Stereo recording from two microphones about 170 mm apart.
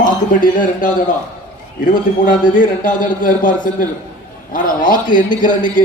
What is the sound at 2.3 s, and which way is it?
A man's voice, 50° left (ahead or behind).